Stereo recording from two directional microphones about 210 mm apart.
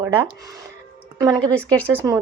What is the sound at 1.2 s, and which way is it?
Speech, 20° right (ahead or behind).